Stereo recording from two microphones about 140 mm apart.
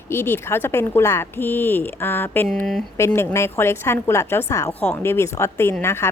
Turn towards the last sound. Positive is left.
turn(degrees=20)  # may be behind; listen again after turning